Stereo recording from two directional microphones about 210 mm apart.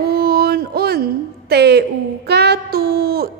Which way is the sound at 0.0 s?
45° right (ahead or behind).